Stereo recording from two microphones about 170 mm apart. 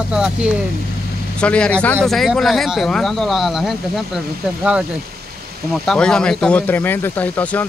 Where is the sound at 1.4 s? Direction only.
5° left (ahead or behind).